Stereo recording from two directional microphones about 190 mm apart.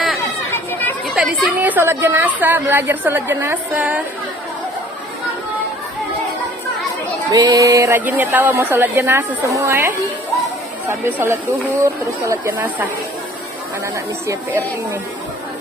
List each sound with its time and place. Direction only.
0.2 s chatter: 10° left (ahead or behind)
1.0 s a woman's voice: centre (ahead or behind)
7.2 s a woman's voice: 20° right (ahead or behind)
13.9 s a woman's voice: 15° right (ahead or behind)